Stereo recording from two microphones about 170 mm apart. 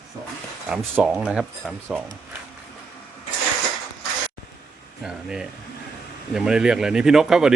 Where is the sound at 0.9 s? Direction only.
10° right (ahead or behind).